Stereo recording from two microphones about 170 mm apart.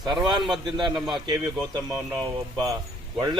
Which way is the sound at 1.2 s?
25° right (ahead or behind).